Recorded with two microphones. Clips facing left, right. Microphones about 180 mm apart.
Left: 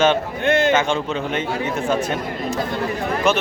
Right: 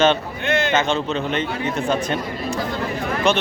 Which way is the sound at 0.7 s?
10° left (ahead or behind).